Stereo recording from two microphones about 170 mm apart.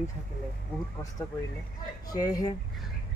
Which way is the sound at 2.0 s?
20° left (ahead or behind).